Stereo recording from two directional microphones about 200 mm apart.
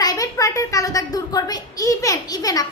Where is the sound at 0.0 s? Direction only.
20° left (ahead or behind).